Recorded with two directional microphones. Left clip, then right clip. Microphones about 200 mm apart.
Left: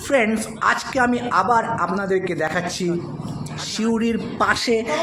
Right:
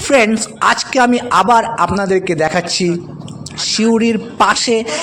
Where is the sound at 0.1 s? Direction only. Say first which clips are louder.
Right 7 dB; 40° right (ahead or behind).